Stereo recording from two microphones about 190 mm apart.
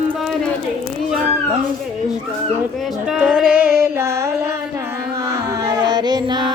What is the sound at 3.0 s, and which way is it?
Music, 5° right (ahead or behind).